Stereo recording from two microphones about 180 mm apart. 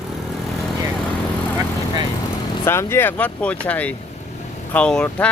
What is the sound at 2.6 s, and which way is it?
Speech, 15° left (ahead or behind).